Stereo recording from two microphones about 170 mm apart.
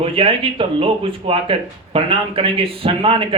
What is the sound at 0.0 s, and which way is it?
Speech, 30° right (ahead or behind).